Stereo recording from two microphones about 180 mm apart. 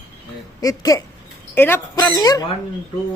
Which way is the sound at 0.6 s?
20° left (ahead or behind).